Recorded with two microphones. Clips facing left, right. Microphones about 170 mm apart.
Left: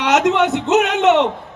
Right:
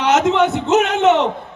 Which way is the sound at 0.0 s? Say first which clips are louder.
Even; 70° left (ahead or behind).